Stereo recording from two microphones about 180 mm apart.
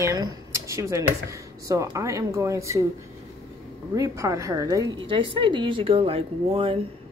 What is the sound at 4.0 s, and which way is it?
A woman's voice, 15° right (ahead or behind).